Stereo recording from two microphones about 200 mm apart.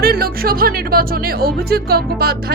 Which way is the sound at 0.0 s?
50° right (ahead or behind).